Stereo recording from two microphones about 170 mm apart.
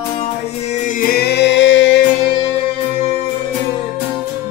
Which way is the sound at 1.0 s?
65° left (ahead or behind).